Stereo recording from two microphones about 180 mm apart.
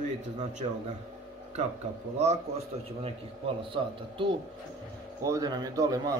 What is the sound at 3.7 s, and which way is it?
Speech, 30° right (ahead or behind).